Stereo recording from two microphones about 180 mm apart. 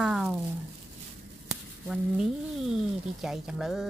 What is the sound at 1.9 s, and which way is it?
Speech, centre (ahead or behind).